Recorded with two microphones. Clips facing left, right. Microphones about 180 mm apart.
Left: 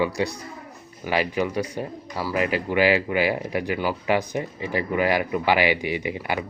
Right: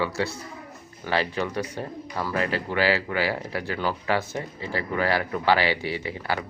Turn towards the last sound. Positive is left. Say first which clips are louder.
# left 2 dB
turn(degrees=15)  # may be behind; listen again after turning